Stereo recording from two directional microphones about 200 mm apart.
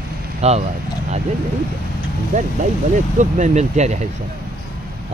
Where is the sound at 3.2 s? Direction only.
35° right (ahead or behind).